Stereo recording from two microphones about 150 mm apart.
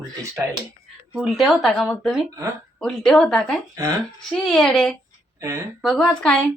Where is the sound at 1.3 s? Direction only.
Centre (ahead or behind).